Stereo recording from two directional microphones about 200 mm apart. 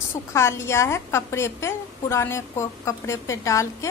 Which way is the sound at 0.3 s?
15° left (ahead or behind).